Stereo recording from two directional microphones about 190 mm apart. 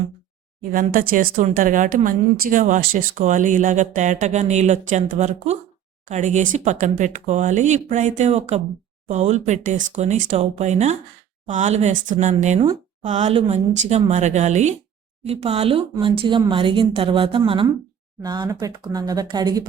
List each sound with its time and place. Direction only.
0.7 s a woman's voice: 50° right (ahead or behind); by 19.6 s 20° right (ahead or behind)